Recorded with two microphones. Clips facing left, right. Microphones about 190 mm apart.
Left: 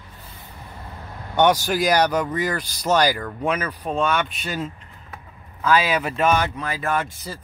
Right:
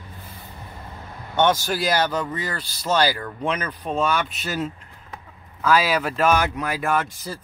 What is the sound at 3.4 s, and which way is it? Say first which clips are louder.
Speech: left 2 dB; 5° left (ahead or behind).